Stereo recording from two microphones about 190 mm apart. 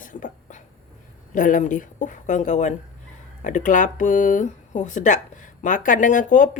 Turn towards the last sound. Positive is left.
turn(degrees=40)  # may be behind; listen again after turning